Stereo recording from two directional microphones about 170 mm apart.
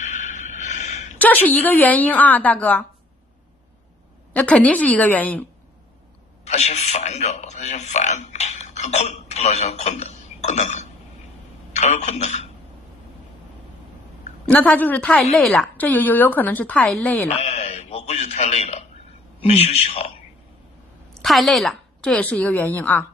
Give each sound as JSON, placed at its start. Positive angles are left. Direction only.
{"t": 0.0, "sound": "a sound", "side_deg": 45}
{"t": 1.1, "sound": "a woman's voice", "side_deg": 10}
{"t": 4.3, "sound": "a woman's voice", "side_deg": 5}
{"t": 6.4, "sound": "a sound", "side_deg": 40}
{"t": 11.7, "sound": "speech", "side_deg": 40}
{"t": 14.4, "sound": "a woman's voice", "side_deg": 5}
{"t": 17.3, "sound": "a sound", "side_deg": 40}
{"t": 19.4, "sound": "a man's voice", "side_deg": 35}
{"t": 21.2, "sound": "a woman's voice", "side_deg": 0}